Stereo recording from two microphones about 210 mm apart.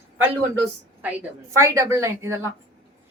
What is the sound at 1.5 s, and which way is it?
Speech, 15° right (ahead or behind).